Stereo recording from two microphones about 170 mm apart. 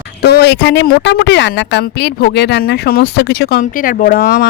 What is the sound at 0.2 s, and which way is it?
Speech, 70° left (ahead or behind).